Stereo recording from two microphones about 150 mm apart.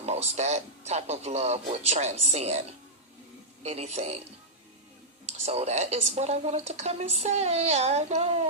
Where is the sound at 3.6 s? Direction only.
45° right (ahead or behind).